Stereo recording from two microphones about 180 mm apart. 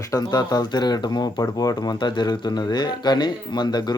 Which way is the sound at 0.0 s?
20° left (ahead or behind).